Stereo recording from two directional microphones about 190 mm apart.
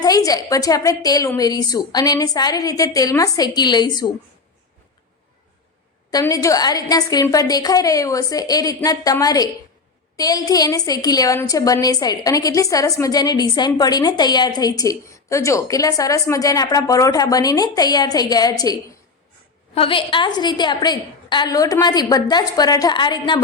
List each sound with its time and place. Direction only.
0.0 s a woman's voice: 20° left (ahead or behind)
6.1 s a woman's voice: 20° left (ahead or behind)